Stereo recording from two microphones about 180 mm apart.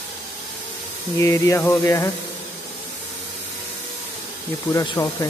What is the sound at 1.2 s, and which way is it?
Speech, 15° left (ahead or behind).